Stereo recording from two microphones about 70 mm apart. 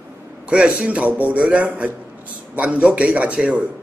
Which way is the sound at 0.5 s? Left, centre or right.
Centre.